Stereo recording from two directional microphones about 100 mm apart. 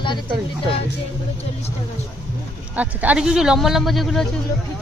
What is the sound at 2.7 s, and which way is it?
Speech, 15° right (ahead or behind).